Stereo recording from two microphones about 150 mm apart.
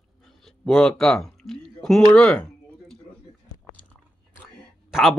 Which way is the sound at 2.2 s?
5° left (ahead or behind).